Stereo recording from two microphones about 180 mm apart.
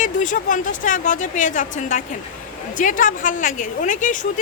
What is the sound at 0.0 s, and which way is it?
A woman's voice, 45° left (ahead or behind).